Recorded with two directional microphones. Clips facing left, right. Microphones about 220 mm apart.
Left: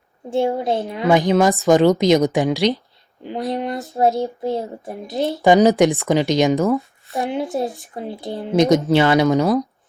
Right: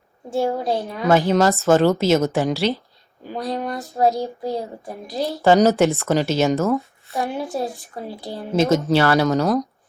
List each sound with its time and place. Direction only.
0.3 s female singing: 25° left (ahead or behind)
0.8 s speech: 20° left (ahead or behind)
3.2 s female singing: 20° left (ahead or behind)
5.4 s speech: 15° left (ahead or behind)
7.2 s female singing: 20° left (ahead or behind)
7.5 s speech: centre (ahead or behind)
8.3 s speech: 20° left (ahead or behind)